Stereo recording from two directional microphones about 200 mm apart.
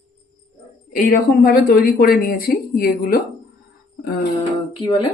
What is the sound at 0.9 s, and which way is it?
Speech, 45° left (ahead or behind).